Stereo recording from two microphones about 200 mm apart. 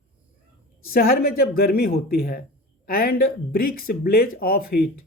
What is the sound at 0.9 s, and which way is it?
Speech, 50° left (ahead or behind).